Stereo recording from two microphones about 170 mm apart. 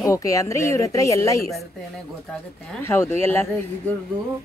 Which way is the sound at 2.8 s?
15° left (ahead or behind).